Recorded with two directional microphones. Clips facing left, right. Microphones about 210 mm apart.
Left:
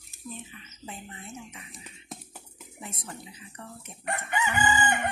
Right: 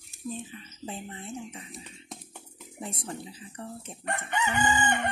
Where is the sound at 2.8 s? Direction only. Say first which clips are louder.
Right 5 dB; 30° right (ahead or behind).